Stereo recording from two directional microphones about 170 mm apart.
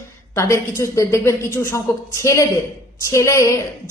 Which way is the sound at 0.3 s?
15° left (ahead or behind).